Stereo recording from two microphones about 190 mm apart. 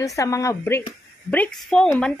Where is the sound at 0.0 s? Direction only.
15° left (ahead or behind).